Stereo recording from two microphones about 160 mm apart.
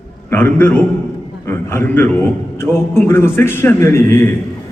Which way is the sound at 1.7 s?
10° left (ahead or behind).